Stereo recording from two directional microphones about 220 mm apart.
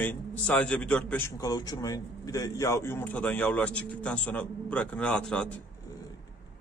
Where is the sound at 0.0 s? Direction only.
5° left (ahead or behind).